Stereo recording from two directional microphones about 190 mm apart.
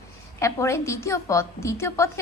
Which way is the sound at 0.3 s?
15° left (ahead or behind).